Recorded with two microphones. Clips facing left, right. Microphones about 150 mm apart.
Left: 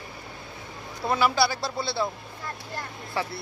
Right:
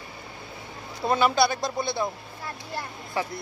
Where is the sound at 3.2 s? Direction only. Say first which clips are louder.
Right 1 dB; 15° right (ahead or behind).